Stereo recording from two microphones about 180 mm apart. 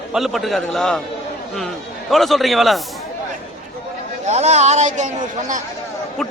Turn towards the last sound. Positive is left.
turn(degrees=-45)  # may be behind; listen again after turning